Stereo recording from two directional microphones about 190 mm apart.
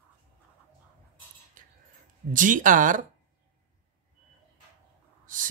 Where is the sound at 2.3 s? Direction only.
45° right (ahead or behind).